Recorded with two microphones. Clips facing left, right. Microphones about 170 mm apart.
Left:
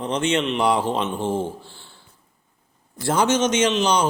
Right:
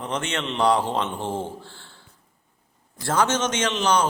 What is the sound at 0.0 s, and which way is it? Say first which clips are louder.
A man's voice: left 6 dB; 20° left (ahead or behind).